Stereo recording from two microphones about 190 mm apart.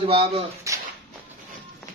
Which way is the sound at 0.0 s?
30° right (ahead or behind).